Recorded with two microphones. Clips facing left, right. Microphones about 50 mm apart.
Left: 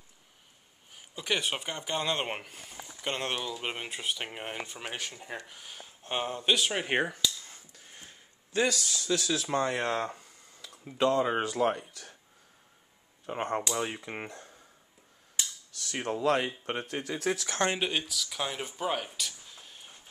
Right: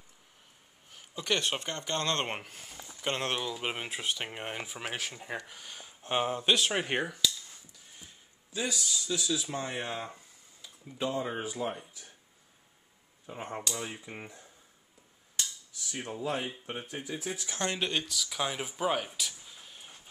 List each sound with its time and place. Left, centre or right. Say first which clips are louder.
0.9 s speech: even; centre
5.5 s speech: even; centre
7.4 s a sound: left 3 dB; left
8.5 s speech: left 5 dB; left
13.3 s speech: left 6 dB; left
15.7 s speech: left 9 dB; left
17.7 s speech: left 1 dB; centre